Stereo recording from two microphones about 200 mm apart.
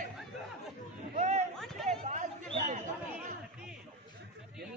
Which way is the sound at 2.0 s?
35° right (ahead or behind).